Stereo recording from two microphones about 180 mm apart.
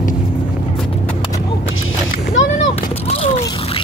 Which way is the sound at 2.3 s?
40° left (ahead or behind).